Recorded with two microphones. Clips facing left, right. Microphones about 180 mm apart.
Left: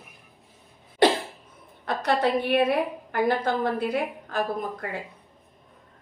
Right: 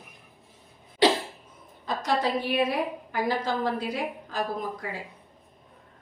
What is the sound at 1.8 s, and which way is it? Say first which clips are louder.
A woman's voice: left 3 dB; 60° left (ahead or behind).